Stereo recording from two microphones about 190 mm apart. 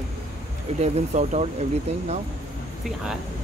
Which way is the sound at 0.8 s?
35° right (ahead or behind).